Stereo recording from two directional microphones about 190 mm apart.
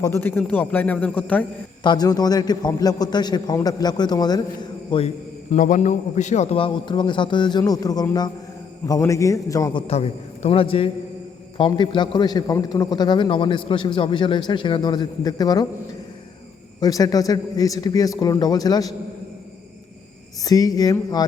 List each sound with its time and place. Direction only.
0.0 s a man's voice: 10° left (ahead or behind)
1.8 s a man's voice: 20° left (ahead or behind)
16.8 s a man's voice: 20° left (ahead or behind)
20.4 s a man's voice: 20° left (ahead or behind)